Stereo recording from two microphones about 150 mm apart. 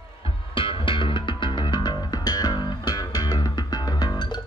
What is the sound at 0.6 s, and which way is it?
Music, 35° left (ahead or behind).